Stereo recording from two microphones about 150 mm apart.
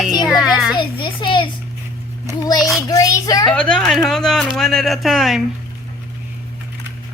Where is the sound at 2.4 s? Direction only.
25° left (ahead or behind).